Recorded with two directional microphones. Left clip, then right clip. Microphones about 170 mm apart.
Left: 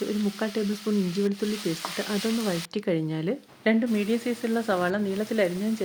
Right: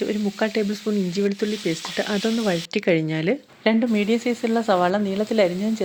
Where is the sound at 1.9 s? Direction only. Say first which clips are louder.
Right 7 dB; 20° right (ahead or behind).